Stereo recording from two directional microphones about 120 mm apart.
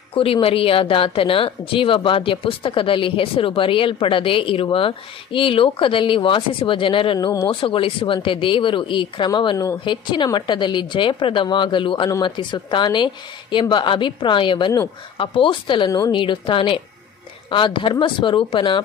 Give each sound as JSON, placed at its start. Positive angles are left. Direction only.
{"t": 0.1, "sound": "speech", "side_deg": 50}
{"t": 7.2, "sound": "a woman's voice", "side_deg": 35}